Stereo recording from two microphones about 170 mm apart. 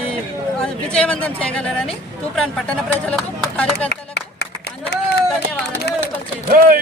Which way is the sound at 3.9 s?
75° left (ahead or behind).